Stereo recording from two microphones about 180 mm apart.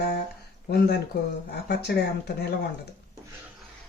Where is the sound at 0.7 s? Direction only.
65° left (ahead or behind).